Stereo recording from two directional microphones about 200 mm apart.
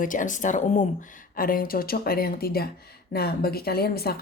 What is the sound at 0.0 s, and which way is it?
A woman's voice, 40° left (ahead or behind).